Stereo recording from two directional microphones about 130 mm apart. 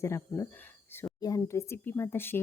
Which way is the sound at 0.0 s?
20° left (ahead or behind).